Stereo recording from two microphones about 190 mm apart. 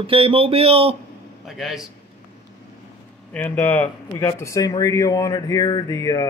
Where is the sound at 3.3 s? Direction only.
10° left (ahead or behind).